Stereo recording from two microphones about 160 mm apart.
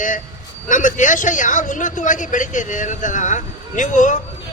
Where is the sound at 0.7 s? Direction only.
55° left (ahead or behind).